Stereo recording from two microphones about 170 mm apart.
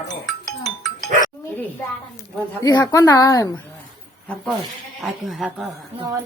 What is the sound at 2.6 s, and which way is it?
Speech, 20° left (ahead or behind).